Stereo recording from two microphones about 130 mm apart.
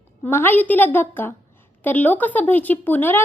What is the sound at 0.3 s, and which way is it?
A woman's voice, 15° left (ahead or behind).